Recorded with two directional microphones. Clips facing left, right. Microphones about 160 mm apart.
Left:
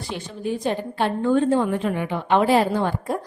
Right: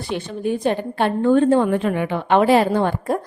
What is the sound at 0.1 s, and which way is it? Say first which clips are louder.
A woman's voice: right 5 dB; 60° right (ahead or behind).